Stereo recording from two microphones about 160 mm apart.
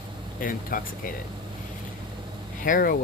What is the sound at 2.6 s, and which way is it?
Speech, 65° left (ahead or behind).